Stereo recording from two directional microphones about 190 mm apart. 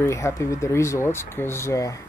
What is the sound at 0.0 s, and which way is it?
Speech, 15° left (ahead or behind).